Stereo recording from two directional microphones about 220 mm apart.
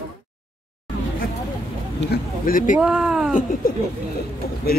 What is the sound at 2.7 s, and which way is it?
Speech, 5° right (ahead or behind).